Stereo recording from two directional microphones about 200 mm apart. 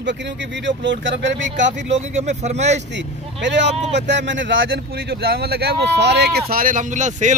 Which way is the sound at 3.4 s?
60° right (ahead or behind).